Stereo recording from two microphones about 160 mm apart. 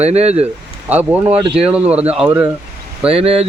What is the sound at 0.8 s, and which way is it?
Speech, 10° right (ahead or behind).